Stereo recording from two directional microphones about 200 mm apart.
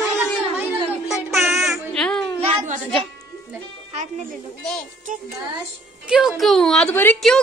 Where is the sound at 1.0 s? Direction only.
Centre (ahead or behind).